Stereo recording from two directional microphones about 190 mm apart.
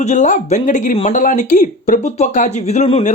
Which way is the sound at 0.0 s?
40° left (ahead or behind).